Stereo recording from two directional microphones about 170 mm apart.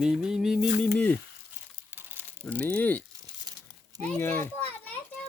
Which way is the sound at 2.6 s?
10° left (ahead or behind).